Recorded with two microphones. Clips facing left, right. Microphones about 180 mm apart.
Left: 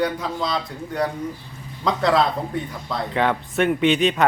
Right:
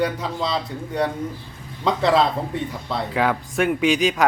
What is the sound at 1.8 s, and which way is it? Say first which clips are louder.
Speech: right 1 dB; centre (ahead or behind).